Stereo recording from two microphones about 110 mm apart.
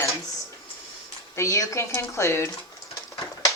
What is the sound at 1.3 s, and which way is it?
Speech, 30° left (ahead or behind).